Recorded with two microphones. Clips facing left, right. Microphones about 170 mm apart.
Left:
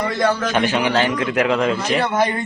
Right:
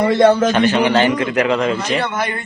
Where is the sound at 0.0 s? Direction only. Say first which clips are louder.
Right 7 dB; 25° right (ahead or behind).